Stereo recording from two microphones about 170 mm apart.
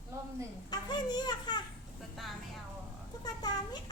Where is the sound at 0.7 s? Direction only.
25° left (ahead or behind).